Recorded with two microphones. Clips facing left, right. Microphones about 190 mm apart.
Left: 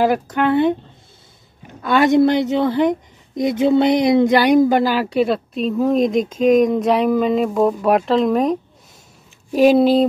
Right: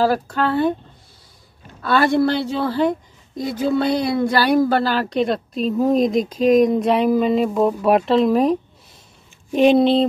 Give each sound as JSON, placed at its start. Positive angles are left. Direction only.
{"t": 0.0, "sound": "speech", "side_deg": 20}
{"t": 1.8, "sound": "a woman's voice", "side_deg": 15}